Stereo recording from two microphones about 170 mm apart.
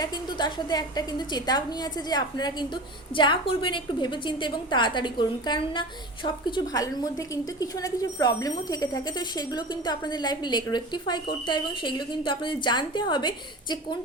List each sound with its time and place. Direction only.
0.0 s a woman's voice: 25° left (ahead or behind)